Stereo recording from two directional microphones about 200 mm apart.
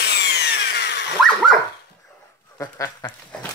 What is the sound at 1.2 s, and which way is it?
Dog, centre (ahead or behind).